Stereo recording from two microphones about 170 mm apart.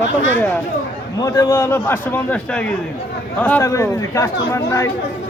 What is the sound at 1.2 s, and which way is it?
A man's voice, 15° left (ahead or behind).